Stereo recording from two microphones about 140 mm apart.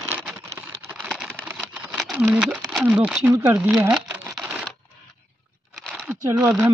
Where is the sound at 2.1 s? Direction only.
15° right (ahead or behind).